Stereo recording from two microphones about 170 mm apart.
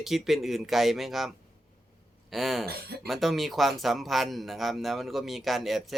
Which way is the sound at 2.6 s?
65° right (ahead or behind).